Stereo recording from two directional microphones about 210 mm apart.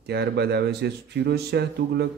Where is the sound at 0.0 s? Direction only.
50° right (ahead or behind).